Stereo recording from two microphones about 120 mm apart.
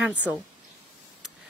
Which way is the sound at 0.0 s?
10° right (ahead or behind).